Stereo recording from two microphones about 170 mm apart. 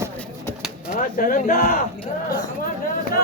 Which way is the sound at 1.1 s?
55° left (ahead or behind).